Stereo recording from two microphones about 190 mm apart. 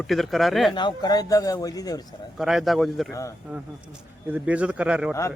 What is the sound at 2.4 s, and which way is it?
Speech, centre (ahead or behind).